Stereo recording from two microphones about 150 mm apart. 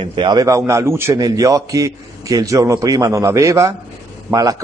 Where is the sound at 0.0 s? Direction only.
30° right (ahead or behind).